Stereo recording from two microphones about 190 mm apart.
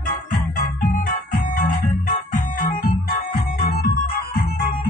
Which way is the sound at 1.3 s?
45° left (ahead or behind).